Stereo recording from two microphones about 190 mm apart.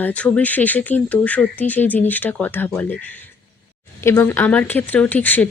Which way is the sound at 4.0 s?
10° left (ahead or behind).